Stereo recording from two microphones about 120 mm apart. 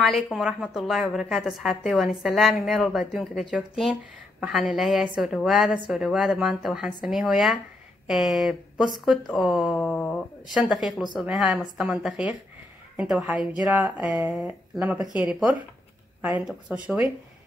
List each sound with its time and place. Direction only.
0.0 s a woman's voice: centre (ahead or behind)
9.8 s a sound: 10° left (ahead or behind)
10.5 s a woman's voice: 5° right (ahead or behind)
16.2 s speech: 15° right (ahead or behind)